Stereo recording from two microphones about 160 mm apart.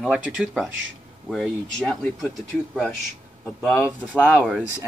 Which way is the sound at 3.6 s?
5° left (ahead or behind).